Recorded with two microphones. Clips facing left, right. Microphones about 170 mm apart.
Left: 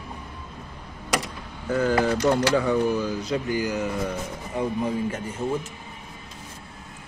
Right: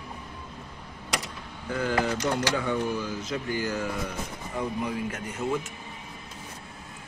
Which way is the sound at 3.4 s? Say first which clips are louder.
Left 4 dB; 15° left (ahead or behind).